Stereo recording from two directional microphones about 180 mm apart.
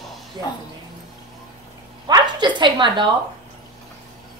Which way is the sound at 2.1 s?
25° right (ahead or behind).